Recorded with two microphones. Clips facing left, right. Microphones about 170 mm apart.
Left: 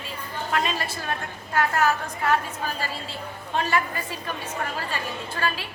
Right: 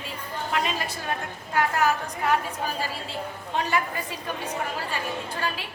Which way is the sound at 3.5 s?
15° right (ahead or behind).